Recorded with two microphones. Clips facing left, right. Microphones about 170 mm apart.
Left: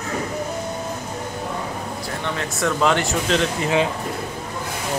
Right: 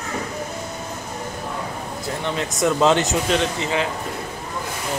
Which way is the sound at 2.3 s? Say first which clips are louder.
Right 3 dB; 20° right (ahead or behind).